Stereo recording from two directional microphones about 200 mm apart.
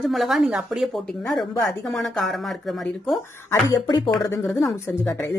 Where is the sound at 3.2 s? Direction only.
10° left (ahead or behind).